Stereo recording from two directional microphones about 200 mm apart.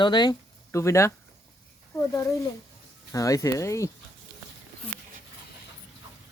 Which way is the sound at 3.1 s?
15° left (ahead or behind).